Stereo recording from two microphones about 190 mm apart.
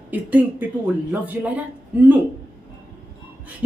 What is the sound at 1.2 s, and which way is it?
Speech, 5° right (ahead or behind).